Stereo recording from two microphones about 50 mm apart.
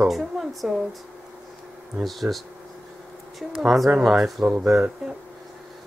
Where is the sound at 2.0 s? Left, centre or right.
Centre.